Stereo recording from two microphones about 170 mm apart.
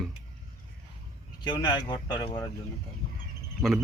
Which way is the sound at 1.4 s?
25° left (ahead or behind).